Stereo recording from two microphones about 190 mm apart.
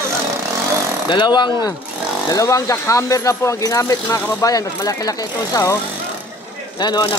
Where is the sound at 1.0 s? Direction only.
25° left (ahead or behind).